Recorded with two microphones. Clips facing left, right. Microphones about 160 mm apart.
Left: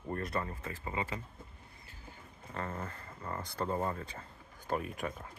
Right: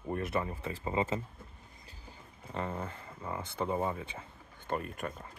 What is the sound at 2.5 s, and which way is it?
Speech, 15° right (ahead or behind).